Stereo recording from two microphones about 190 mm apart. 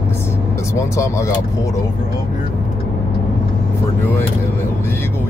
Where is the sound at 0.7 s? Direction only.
15° left (ahead or behind).